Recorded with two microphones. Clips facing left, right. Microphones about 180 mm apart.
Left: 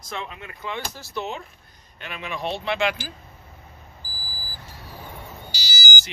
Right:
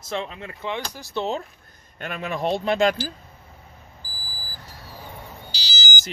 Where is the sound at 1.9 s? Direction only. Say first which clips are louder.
Right 4 dB; 45° right (ahead or behind).